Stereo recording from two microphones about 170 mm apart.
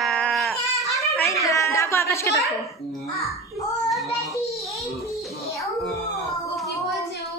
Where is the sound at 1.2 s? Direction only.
20° left (ahead or behind).